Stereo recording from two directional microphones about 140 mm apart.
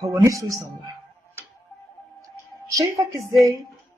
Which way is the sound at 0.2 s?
25° right (ahead or behind).